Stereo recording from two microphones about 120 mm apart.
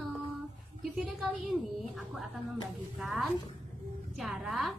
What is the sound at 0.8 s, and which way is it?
Speech, centre (ahead or behind).